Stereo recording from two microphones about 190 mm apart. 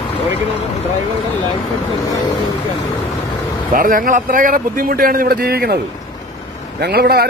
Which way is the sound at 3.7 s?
45° right (ahead or behind).